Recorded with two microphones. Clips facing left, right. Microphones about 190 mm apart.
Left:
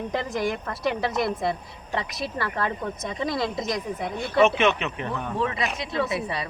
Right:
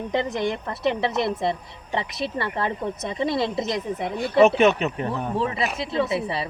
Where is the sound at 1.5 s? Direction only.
25° right (ahead or behind).